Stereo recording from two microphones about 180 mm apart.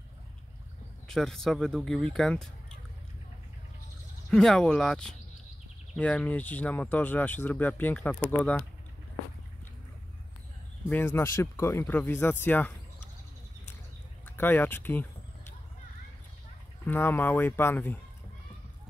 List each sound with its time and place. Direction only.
1.0 s speech: 5° left (ahead or behind)
4.3 s speech: 5° left (ahead or behind)
10.9 s speech: 10° left (ahead or behind)
14.2 s a sound: 10° left (ahead or behind)
16.8 s speech: 10° left (ahead or behind)